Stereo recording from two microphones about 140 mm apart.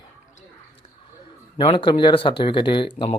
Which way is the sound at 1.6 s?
35° left (ahead or behind).